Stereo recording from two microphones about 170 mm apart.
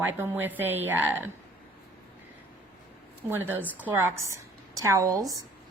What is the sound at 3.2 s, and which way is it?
A woman's voice, 15° right (ahead or behind).